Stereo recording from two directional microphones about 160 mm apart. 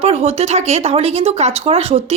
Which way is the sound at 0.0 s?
40° right (ahead or behind).